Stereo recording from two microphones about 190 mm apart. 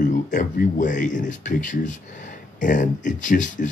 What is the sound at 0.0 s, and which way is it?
Speech, 40° left (ahead or behind).